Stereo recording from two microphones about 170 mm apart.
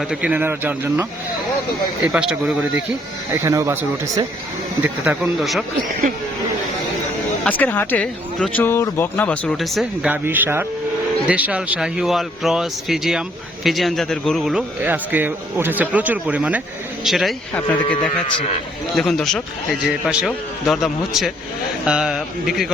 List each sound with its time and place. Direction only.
0.0 s a man's voice: 5° right (ahead or behind)
2.1 s a man's voice: 5° right (ahead or behind)
7.4 s speech: 10° left (ahead or behind)
10.1 s a man's voice: 10° right (ahead or behind); by 17.7 s 5° left (ahead or behind)
18.9 s a man's voice: centre (ahead or behind)